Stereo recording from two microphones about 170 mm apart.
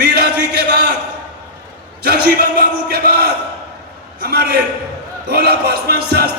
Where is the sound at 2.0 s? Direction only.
65° right (ahead or behind).